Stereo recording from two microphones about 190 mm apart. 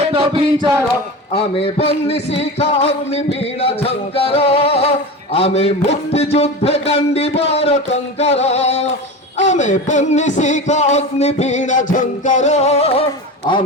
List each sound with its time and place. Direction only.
0.1 s a sound: 30° right (ahead or behind)
1.3 s music: 30° left (ahead or behind)
13.5 s a man's voice: 25° left (ahead or behind)